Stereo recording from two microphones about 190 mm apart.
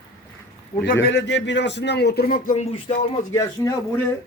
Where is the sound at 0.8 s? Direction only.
80° left; by 2.9 s 30° left (ahead or behind).